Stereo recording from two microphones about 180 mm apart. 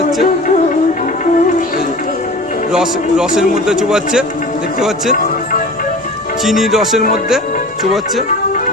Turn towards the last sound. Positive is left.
turn(degrees=0)  # may be behind; listen again after turning